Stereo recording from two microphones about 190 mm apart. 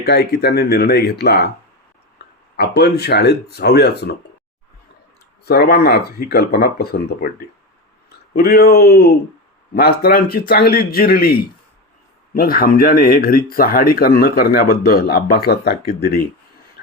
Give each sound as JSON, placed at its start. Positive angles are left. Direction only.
{"t": 0.0, "sound": "speech", "side_deg": 60}
{"t": 2.2, "sound": "a sound", "side_deg": 60}
{"t": 2.6, "sound": "speech", "side_deg": 60}
{"t": 5.5, "sound": "speech", "side_deg": 55}